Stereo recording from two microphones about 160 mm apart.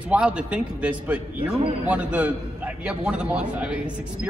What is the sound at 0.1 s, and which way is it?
A man's voice, 5° right (ahead or behind).